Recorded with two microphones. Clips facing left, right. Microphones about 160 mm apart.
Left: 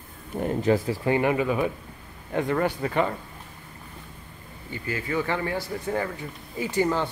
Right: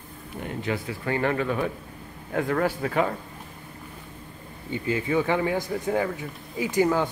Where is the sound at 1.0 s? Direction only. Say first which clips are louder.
Even; 15° left (ahead or behind); by 3.2 s centre (ahead or behind).